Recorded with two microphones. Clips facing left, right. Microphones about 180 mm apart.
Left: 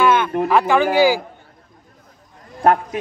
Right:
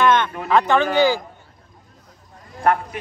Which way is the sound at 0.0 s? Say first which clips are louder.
Left 1 dB; 5° left (ahead or behind).